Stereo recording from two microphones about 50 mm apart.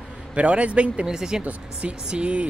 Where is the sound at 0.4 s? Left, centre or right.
Right.